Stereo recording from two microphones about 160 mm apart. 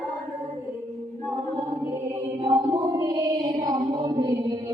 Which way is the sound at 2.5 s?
25° right (ahead or behind).